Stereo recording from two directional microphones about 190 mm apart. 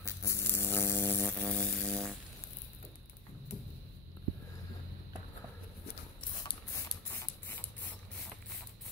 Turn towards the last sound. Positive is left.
turn(degrees=10)  # may be behind; listen again after turning